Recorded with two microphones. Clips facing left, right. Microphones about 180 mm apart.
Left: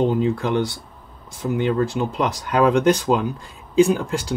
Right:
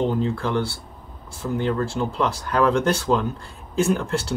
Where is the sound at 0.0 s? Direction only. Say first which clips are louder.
Left 3 dB; 15° left (ahead or behind).